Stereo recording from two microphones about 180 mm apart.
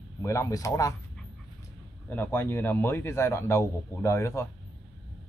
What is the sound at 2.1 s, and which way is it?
A man's voice, 10° left (ahead or behind).